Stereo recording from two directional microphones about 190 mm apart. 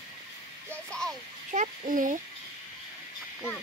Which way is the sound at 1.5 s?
45° right (ahead or behind).